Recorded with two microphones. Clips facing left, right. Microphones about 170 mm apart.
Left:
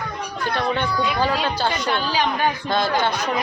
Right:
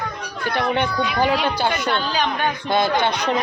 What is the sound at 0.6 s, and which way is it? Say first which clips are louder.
A man's voice: right 2 dB; 15° right (ahead or behind).